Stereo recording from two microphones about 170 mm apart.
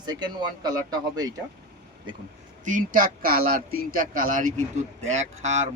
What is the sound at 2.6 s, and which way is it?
Speech, 50° right (ahead or behind).